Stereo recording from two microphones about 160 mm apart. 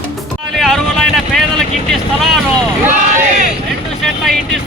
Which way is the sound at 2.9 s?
50° right (ahead or behind).